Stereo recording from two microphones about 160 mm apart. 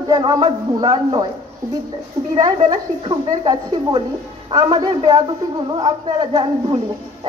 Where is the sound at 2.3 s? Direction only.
25° right (ahead or behind).